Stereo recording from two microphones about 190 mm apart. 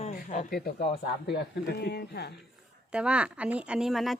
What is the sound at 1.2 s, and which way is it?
Speech, 60° left (ahead or behind).